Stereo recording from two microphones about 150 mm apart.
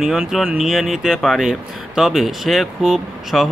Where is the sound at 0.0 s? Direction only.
Centre (ahead or behind).